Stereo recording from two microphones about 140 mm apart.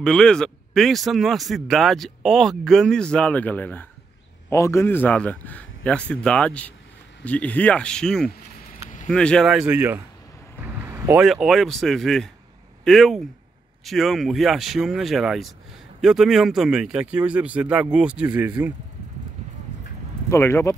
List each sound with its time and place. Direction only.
0.0 s a man's voice: 5° left (ahead or behind)
9.5 s speech: 10° right (ahead or behind)
10.6 s vehicle: 15° right (ahead or behind)
11.1 s speech: 5° right (ahead or behind)
20.2 s speech: 20° left (ahead or behind)